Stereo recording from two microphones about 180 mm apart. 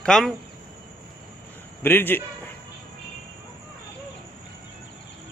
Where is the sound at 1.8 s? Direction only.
10° left (ahead or behind).